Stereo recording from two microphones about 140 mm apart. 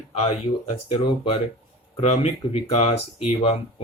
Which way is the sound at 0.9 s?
40° left (ahead or behind).